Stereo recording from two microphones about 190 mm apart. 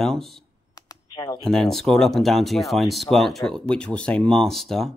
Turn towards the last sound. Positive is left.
turn(degrees=0)  # may be behind; listen again after turning